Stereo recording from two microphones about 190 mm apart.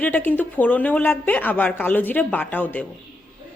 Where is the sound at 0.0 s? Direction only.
10° left (ahead or behind).